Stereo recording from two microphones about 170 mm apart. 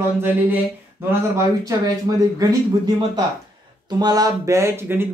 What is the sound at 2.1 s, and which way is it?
Speech, 20° right (ahead or behind).